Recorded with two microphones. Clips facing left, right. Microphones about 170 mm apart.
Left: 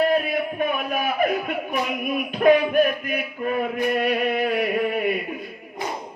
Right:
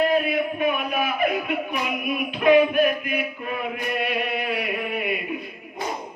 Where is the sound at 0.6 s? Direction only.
45° left (ahead or behind).